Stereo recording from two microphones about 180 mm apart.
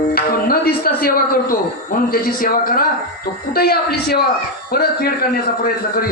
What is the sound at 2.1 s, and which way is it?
A man's voice, 55° left (ahead or behind).